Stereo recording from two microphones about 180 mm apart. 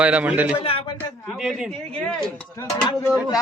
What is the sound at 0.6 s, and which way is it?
Speech, 30° left (ahead or behind).